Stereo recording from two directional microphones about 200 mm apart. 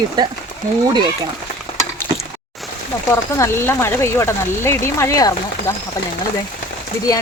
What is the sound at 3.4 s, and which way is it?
Speech, 10° left (ahead or behind).